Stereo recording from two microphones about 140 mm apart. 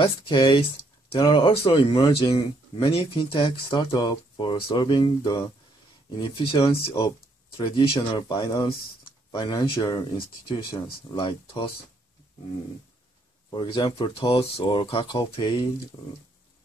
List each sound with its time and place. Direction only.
0.0 s speech: 35° left (ahead or behind)
13.5 s speech: 35° left (ahead or behind)